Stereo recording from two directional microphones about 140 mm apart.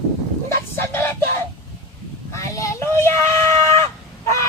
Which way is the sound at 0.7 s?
15° left (ahead or behind).